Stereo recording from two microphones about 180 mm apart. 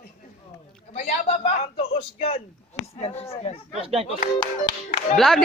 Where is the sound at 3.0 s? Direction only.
35° left (ahead or behind).